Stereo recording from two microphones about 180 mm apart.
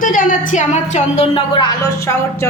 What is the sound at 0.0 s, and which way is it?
A woman's voice, 50° left (ahead or behind).